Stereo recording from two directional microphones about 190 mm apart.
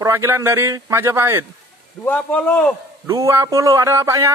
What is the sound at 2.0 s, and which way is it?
Speech, 10° left (ahead or behind).